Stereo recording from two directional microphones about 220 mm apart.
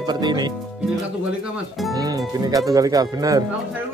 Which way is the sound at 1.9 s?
15° right (ahead or behind).